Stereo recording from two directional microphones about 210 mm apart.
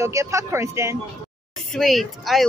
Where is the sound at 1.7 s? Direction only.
Centre (ahead or behind).